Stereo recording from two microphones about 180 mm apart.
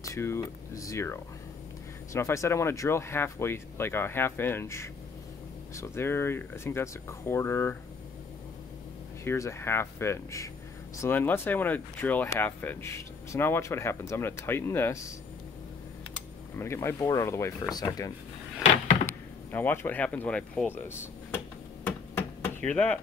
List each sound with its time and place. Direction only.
0.0 s speech: 15° left (ahead or behind)
9.2 s speech: 15° left (ahead or behind)
16.5 s speech: 15° left (ahead or behind)
19.5 s speech: 10° left (ahead or behind)
21.8 s a sound: 10° left (ahead or behind)
22.7 s speech: 10° left (ahead or behind)